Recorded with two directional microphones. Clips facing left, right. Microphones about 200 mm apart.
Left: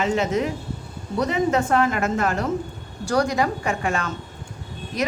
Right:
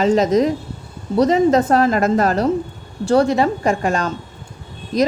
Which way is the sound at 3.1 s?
25° right (ahead or behind).